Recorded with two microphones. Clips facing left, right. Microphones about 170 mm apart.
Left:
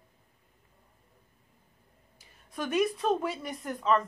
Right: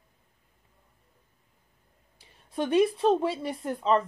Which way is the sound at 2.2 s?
30° right (ahead or behind).